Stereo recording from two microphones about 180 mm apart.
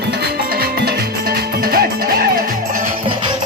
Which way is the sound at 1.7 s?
55° right (ahead or behind).